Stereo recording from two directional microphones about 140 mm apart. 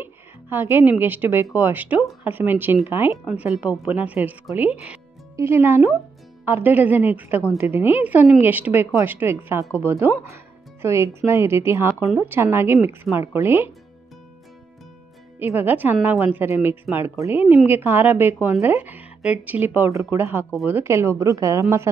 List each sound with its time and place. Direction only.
0.0 s a woman's voice: 15° right (ahead or behind)
15.3 s a woman's voice: 15° right (ahead or behind)